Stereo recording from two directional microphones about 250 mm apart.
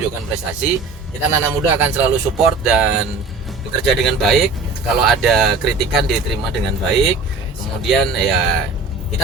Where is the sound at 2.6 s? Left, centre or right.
Centre.